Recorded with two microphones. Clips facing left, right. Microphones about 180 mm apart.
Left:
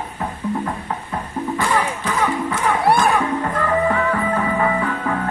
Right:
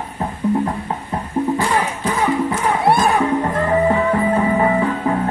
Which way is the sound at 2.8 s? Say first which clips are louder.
Right 2 dB; 25° right (ahead or behind).